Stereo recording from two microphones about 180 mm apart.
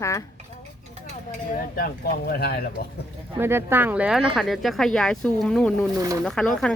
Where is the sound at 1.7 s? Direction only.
55° left (ahead or behind).